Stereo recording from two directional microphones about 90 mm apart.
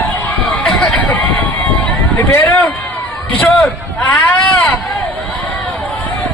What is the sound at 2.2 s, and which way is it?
Speech, 30° left (ahead or behind).